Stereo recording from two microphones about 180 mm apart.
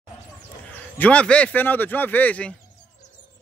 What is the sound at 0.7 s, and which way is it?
Speech, 10° left (ahead or behind).